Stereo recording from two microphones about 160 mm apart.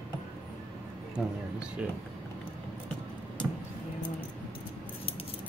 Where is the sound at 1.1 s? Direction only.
5° right (ahead or behind).